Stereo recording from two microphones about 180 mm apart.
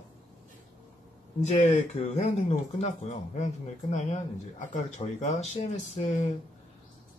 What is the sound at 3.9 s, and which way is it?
Speech, 40° left (ahead or behind).